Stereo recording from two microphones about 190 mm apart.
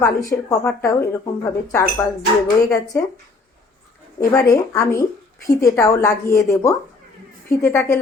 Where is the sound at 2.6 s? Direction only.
15° left (ahead or behind).